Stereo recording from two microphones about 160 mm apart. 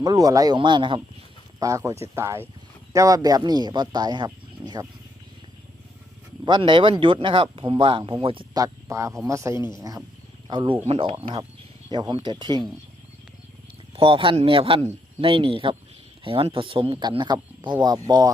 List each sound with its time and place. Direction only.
0.0 s speech: 25° right (ahead or behind)
1.5 s speech: 20° right (ahead or behind)
6.4 s speech: 30° right (ahead or behind)
8.5 s speech: 20° right (ahead or behind)
10.5 s speech: 30° right (ahead or behind)
13.9 s speech: 35° right (ahead or behind)